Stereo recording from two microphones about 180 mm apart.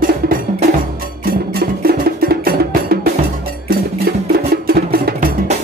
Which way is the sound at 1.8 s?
55° right (ahead or behind).